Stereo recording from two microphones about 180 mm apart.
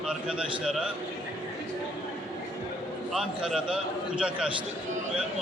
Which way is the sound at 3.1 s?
Centre (ahead or behind).